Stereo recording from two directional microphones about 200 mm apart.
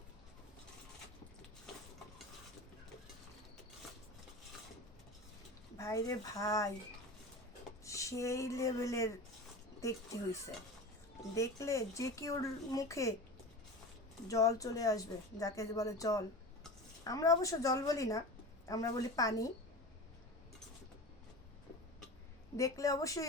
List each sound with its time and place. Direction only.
5.7 s speech: 15° left (ahead or behind)
7.9 s speech: 15° left (ahead or behind)
11.3 s speech: 15° left (ahead or behind)
14.3 s speech: 15° left (ahead or behind)
22.5 s speech: 15° left (ahead or behind)